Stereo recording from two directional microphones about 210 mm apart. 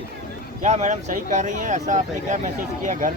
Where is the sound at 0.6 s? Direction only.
35° right (ahead or behind).